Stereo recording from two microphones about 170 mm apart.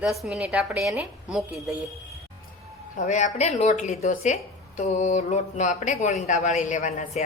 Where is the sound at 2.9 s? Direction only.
45° left (ahead or behind).